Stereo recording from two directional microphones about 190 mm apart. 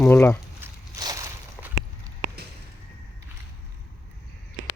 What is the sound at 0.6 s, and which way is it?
Walk, 20° right (ahead or behind).